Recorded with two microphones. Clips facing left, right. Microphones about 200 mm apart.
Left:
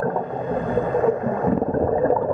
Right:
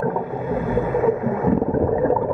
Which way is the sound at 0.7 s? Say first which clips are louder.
Even; 5° right (ahead or behind).